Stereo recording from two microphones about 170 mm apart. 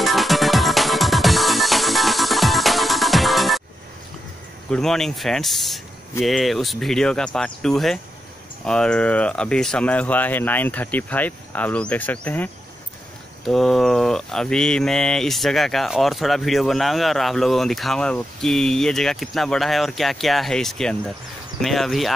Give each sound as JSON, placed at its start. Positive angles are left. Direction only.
{"t": 0.0, "sound": "music", "side_deg": 0}
{"t": 4.6, "sound": "mantra", "side_deg": 5}
{"t": 8.6, "sound": "speech", "side_deg": 5}
{"t": 13.4, "sound": "mantra", "side_deg": 0}